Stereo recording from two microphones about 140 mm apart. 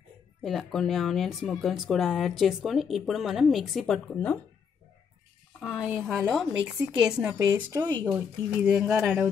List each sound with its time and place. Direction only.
0.4 s speech: centre (ahead or behind)
6.0 s speech: centre (ahead or behind)
7.3 s speech: 20° right (ahead or behind)
8.1 s speech: 5° right (ahead or behind)